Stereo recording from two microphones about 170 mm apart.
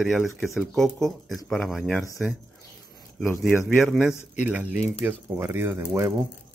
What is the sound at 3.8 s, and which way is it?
Speech, centre (ahead or behind).